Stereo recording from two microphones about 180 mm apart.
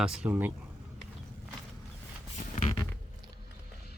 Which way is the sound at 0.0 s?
5° right (ahead or behind).